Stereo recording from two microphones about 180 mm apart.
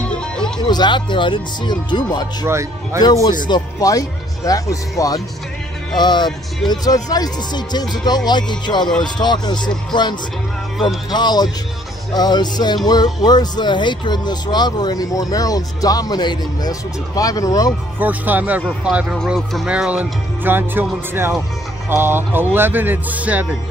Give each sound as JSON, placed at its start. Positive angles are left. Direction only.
{"t": 0.0, "sound": "music", "side_deg": 5}
{"t": 0.7, "sound": "speech", "side_deg": 25}
{"t": 2.4, "sound": "speech", "side_deg": -15}
{"t": 3.0, "sound": "speech", "side_deg": 20}
{"t": 11.1, "sound": "speech", "side_deg": 25}
{"t": 17.9, "sound": "speech", "side_deg": -10}